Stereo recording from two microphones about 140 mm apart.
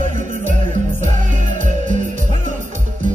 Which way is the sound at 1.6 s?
60° right (ahead or behind).